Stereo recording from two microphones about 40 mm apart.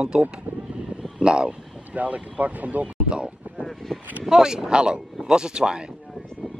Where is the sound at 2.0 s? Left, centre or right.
Right.